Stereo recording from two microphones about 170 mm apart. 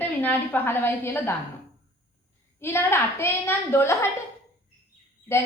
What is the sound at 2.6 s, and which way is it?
A woman's voice, 15° left (ahead or behind).